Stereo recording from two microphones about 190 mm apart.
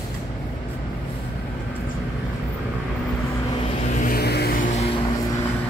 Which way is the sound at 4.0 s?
55° left (ahead or behind).